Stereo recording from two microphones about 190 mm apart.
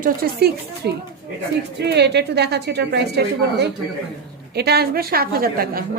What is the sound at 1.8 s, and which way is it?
A woman's voice, 60° right (ahead or behind).